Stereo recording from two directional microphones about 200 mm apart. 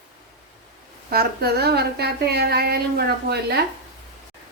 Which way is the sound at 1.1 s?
50° right (ahead or behind).